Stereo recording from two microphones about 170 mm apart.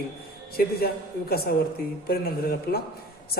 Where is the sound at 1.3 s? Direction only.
65° left (ahead or behind).